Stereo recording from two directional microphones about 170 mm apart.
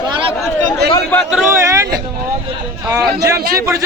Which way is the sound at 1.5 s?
15° right (ahead or behind).